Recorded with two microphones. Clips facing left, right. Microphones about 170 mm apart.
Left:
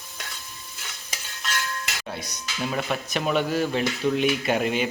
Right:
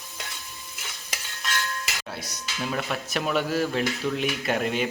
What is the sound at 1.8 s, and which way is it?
Speech, 5° right (ahead or behind).